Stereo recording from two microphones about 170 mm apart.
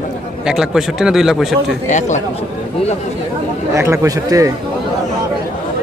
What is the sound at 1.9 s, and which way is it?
Speech, 45° left (ahead or behind).